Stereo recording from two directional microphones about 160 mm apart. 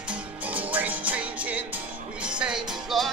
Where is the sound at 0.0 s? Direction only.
10° right (ahead or behind).